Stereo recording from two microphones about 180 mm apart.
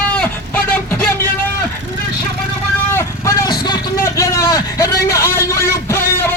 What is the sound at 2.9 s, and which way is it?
Vehicle, 20° left (ahead or behind).